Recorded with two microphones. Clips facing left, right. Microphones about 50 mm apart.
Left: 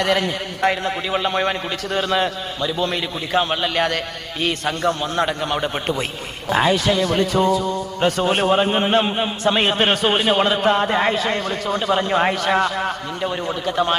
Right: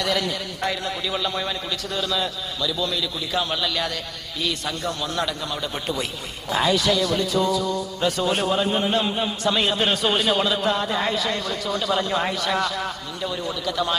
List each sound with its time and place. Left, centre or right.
0.0 s a man's voice: left